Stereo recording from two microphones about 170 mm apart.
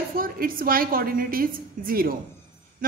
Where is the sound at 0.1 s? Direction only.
60° right (ahead or behind).